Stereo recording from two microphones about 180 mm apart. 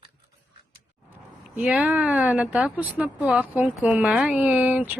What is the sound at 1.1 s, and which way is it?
Speech, 5° right (ahead or behind).